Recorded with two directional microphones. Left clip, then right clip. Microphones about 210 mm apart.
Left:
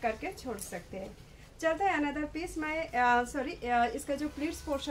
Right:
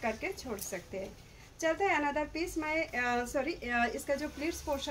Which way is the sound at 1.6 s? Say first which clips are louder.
Left 1 dB; 15° left (ahead or behind).